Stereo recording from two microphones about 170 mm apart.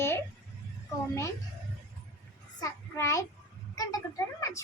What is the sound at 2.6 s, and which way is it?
A child's voice, 15° left (ahead or behind).